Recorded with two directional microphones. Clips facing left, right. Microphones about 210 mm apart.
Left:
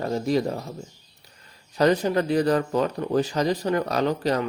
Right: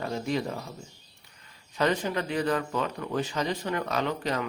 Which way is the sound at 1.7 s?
40° left (ahead or behind).